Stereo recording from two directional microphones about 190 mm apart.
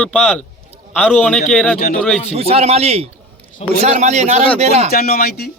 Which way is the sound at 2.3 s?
35° right (ahead or behind).